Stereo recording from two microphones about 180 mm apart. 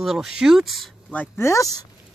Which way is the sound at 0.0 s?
Centre (ahead or behind).